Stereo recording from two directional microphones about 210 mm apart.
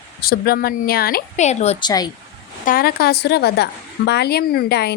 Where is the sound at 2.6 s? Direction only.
45° left (ahead or behind).